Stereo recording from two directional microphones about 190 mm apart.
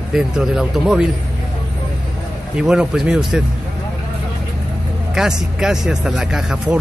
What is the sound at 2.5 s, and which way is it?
Speech, 5° right (ahead or behind).